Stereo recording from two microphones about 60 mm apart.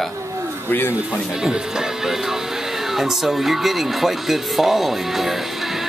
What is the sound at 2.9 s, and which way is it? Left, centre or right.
Speech, centre.